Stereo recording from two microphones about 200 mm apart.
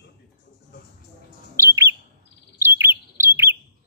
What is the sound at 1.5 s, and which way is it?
Bird, 15° right (ahead or behind).